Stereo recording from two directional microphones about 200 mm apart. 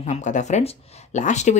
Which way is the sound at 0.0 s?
35° left (ahead or behind).